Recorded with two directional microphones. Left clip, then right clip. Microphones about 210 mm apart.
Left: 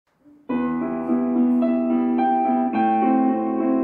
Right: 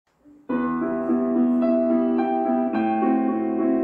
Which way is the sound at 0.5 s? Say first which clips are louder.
Even; 30° left (ahead or behind).